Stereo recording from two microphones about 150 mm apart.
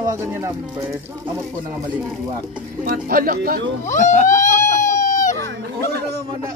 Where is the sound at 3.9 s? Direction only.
55° left (ahead or behind).